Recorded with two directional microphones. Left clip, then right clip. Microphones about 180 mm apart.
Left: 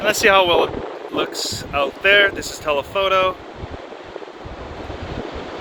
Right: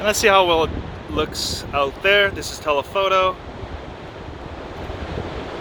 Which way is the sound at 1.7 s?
10° right (ahead or behind).